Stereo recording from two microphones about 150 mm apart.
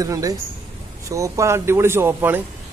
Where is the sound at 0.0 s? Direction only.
25° right (ahead or behind).